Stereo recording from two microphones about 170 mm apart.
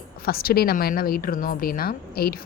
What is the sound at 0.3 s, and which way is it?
Speech, 60° left (ahead or behind).